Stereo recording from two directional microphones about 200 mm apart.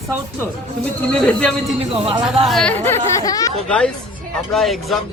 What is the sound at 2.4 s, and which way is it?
Speech, 5° left (ahead or behind).